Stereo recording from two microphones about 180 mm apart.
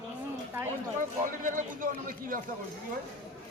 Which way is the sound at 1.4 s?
50° right (ahead or behind).